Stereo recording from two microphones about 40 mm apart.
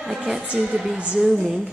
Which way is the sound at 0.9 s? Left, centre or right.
Right.